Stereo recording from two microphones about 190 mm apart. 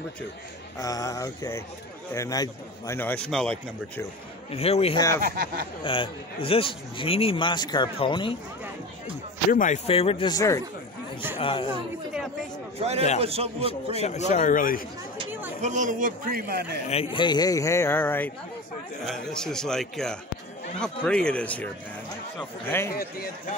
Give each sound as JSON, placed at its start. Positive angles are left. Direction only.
{"t": 0.7, "sound": "a man's voice", "side_deg": 15}
{"t": 4.5, "sound": "speech", "side_deg": 30}
{"t": 5.2, "sound": "speech", "side_deg": -50}
{"t": 5.9, "sound": "a man's voice", "side_deg": 30}
{"t": 9.5, "sound": "a man's voice", "side_deg": 45}
{"t": 9.8, "sound": "a man's voice", "side_deg": 30}
{"t": 11.3, "sound": "a man's voice", "side_deg": 30}
{"t": 12.7, "sound": "a man's voice", "side_deg": -35}
{"t": 13.9, "sound": "speech", "side_deg": 35}
{"t": 15.6, "sound": "speech", "side_deg": -40}
{"t": 16.8, "sound": "a man's voice", "side_deg": 30}
{"t": 22.7, "sound": "a man's voice", "side_deg": 15}
{"t": 22.9, "sound": "a man's voice", "side_deg": 50}